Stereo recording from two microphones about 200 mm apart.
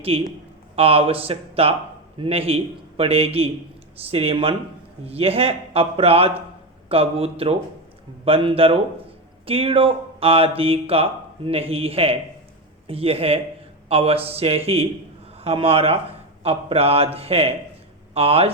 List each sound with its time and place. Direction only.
0.1 s speech: 30° right (ahead or behind)